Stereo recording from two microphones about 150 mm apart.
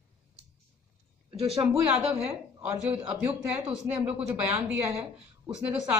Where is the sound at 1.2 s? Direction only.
40° right (ahead or behind).